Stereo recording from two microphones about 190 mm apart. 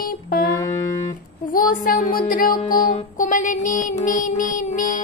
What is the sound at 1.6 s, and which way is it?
Speech, 50° left (ahead or behind).